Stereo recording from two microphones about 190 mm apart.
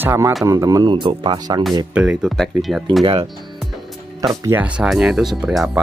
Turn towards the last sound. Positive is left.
turn(degrees=0)  # may be behind; listen again after turning